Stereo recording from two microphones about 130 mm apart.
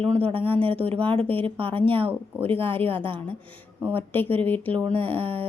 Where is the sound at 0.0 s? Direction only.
45° right (ahead or behind).